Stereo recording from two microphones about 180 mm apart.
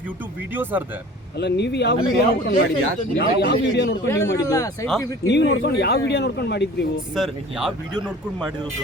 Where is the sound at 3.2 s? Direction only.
65° left (ahead or behind).